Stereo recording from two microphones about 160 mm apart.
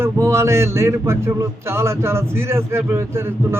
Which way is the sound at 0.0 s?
15° right (ahead or behind).